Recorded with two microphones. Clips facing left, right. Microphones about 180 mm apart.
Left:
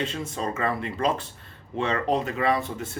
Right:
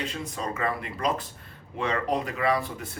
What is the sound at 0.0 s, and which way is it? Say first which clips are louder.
Speech: left 3 dB; 25° left (ahead or behind).